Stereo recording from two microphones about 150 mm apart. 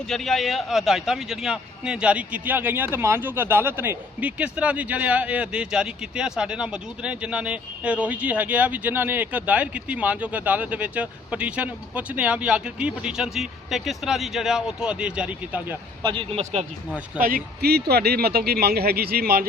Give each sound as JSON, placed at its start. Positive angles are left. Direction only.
{"t": 0.1, "sound": "a man's voice", "side_deg": 0}
{"t": 16.0, "sound": "a man's voice", "side_deg": -35}
{"t": 16.4, "sound": "speech", "side_deg": -50}
{"t": 17.2, "sound": "a man's voice", "side_deg": -75}